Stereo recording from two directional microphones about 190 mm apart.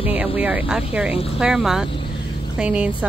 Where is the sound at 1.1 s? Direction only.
30° left (ahead or behind).